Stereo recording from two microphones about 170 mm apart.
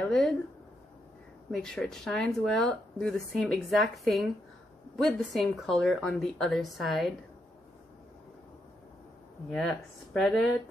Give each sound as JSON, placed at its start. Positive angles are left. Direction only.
{"t": 0.0, "sound": "speech", "side_deg": 5}
{"t": 1.5, "sound": "speech", "side_deg": 5}
{"t": 9.5, "sound": "speech", "side_deg": 5}